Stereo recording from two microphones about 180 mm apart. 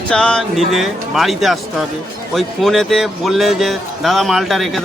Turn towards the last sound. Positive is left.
turn(degrees=0)  # may be behind; listen again after turning